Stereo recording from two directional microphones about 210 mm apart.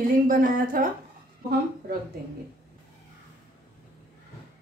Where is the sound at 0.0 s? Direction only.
40° right (ahead or behind).